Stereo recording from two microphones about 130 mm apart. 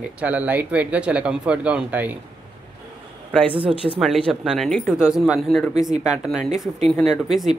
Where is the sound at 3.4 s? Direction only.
45° right (ahead or behind).